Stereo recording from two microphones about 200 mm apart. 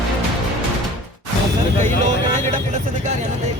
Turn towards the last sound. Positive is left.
turn(degrees=-35)  # may be behind; listen again after turning